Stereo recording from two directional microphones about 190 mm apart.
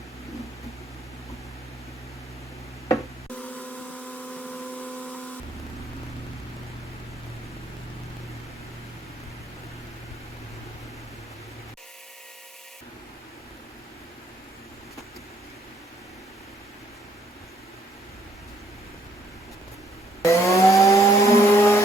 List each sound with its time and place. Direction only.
2.9 s printer: 10° left (ahead or behind)
20.2 s chainsaw: 15° left (ahead or behind)